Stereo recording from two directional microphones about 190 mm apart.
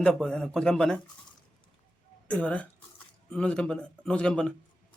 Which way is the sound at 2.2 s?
5° left (ahead or behind).